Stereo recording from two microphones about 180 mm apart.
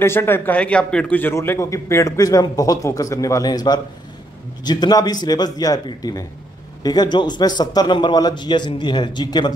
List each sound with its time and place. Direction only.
0.0 s a man's voice: 15° left (ahead or behind)